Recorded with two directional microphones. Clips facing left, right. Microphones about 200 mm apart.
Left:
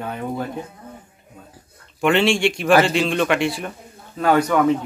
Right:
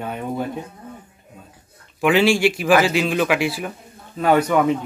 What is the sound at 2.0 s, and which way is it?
Speech, centre (ahead or behind).